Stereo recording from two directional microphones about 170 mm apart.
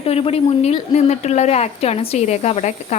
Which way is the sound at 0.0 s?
35° left (ahead or behind).